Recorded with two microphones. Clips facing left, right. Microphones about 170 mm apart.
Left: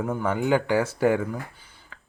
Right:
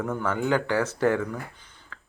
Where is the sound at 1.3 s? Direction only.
10° left (ahead or behind).